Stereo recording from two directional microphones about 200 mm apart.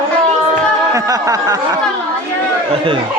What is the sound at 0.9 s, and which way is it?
Speech, 15° right (ahead or behind).